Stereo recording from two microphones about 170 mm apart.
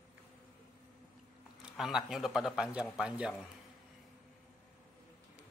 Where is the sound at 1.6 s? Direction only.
Centre (ahead or behind).